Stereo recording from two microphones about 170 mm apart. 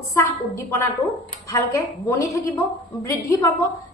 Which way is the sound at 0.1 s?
15° left (ahead or behind).